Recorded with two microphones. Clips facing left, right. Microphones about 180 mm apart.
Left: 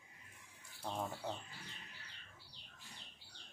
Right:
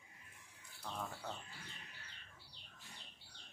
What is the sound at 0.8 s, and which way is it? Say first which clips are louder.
Speech: left 4 dB; 30° left (ahead or behind).